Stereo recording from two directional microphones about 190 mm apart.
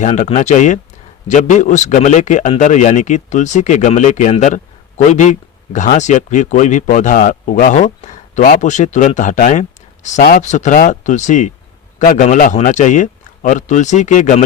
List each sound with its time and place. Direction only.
0.0 s a man's voice: 40° left (ahead or behind)